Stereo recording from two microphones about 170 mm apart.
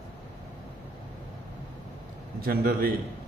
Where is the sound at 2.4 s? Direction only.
60° right (ahead or behind).